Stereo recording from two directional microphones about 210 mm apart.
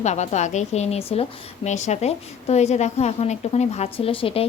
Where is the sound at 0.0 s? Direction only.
30° left (ahead or behind).